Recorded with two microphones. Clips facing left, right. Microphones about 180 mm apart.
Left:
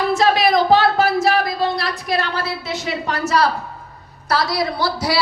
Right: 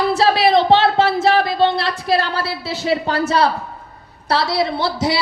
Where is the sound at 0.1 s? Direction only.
30° right (ahead or behind).